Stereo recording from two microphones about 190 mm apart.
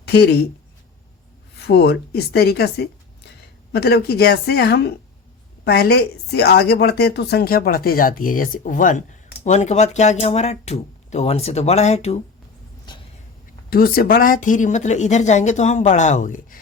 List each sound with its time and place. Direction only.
0.0 s speech: 60° left (ahead or behind)
1.6 s a woman's voice: 60° left (ahead or behind); by 12.2 s 35° left (ahead or behind)
12.9 s vehicle: 25° left (ahead or behind)
13.7 s speech: 50° left (ahead or behind)